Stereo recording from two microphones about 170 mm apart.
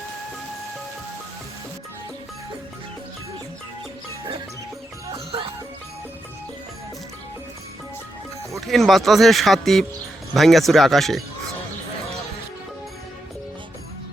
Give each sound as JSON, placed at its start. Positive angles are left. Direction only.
{"t": 5.1, "sound": "music", "side_deg": -35}
{"t": 8.6, "sound": "speech", "side_deg": 0}